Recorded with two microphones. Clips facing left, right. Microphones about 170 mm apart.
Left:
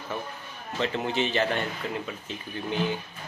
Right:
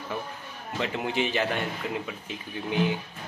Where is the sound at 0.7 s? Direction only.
10° right (ahead or behind).